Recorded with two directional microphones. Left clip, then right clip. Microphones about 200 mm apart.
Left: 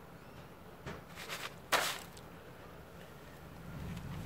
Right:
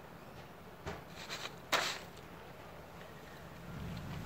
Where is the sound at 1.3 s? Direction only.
25° left (ahead or behind).